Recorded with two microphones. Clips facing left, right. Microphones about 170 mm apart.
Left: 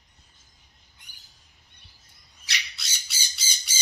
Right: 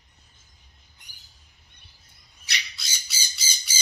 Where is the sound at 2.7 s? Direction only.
70° left (ahead or behind).